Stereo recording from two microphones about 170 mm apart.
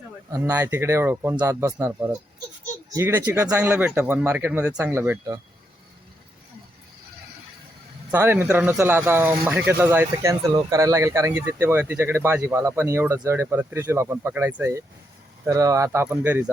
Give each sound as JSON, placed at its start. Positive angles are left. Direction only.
{"t": 0.3, "sound": "speech", "side_deg": -20}
{"t": 8.1, "sound": "speech", "side_deg": -15}